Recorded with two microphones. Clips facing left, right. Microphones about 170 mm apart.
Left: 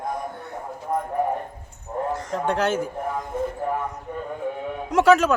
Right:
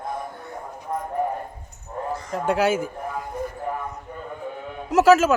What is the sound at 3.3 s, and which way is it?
Music, 25° left (ahead or behind).